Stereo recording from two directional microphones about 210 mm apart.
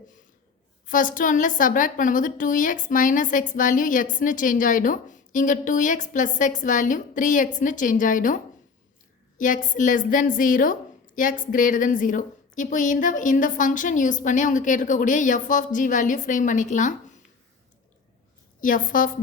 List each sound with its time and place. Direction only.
0.9 s a woman's voice: 40° left (ahead or behind)
9.4 s a woman's voice: 40° left (ahead or behind)
18.6 s a woman's voice: 40° left (ahead or behind)